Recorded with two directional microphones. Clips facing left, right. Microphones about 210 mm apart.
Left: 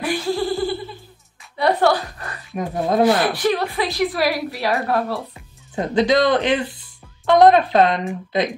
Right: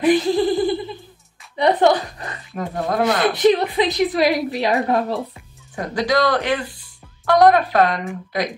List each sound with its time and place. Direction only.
0.0 s laughter: 20° right (ahead or behind)
1.6 s a sound: 20° right (ahead or behind)
2.5 s a woman's voice: 20° left (ahead or behind)
3.2 s a woman's voice: 20° right (ahead or behind)
5.8 s a woman's voice: 25° left (ahead or behind)